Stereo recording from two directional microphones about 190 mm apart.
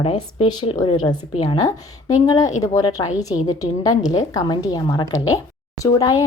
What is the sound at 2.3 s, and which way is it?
A woman's voice, 15° left (ahead or behind).